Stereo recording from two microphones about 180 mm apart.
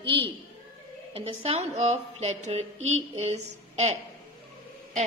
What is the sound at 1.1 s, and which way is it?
A woman's voice, 35° right (ahead or behind).